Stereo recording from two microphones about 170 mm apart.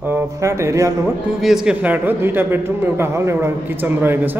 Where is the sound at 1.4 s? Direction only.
5° right (ahead or behind).